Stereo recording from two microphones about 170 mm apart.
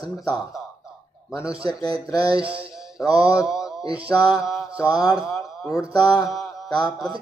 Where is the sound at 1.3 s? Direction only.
5° right (ahead or behind).